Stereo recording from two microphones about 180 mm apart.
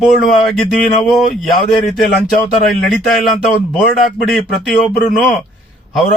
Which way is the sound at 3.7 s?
Centre (ahead or behind).